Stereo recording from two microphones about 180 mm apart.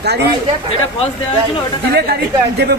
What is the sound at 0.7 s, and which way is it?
Speech, 35° left (ahead or behind).